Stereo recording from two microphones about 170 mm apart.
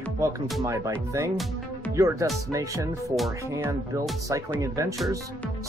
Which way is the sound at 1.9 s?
20° right (ahead or behind).